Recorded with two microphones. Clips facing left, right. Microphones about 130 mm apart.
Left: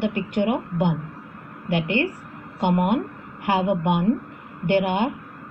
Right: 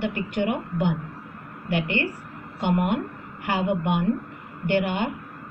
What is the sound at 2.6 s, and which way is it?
A woman's voice, 80° left.